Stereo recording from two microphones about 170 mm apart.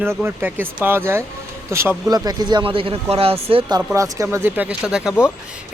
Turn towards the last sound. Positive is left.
turn(degrees=-5)  # may be behind; listen again after turning